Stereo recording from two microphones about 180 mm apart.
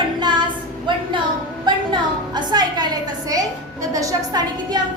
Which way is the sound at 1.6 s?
25° right (ahead or behind).